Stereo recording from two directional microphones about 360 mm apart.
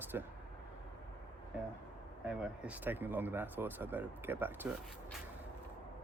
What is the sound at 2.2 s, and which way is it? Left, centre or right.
Speech, centre.